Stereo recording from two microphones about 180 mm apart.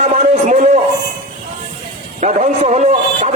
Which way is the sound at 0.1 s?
40° right (ahead or behind).